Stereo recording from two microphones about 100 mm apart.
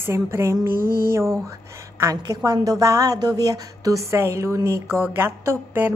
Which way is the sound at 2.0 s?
35° right (ahead or behind).